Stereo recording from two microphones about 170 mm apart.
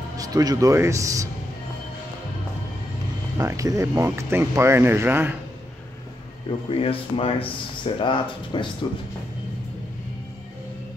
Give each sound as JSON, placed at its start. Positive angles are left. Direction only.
{"t": 0.2, "sound": "speech", "side_deg": -20}
{"t": 3.3, "sound": "speech", "side_deg": -20}
{"t": 6.7, "sound": "speech", "side_deg": 35}